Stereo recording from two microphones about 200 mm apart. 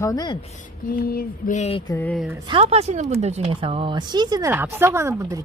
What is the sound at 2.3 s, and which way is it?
Speech, 25° right (ahead or behind).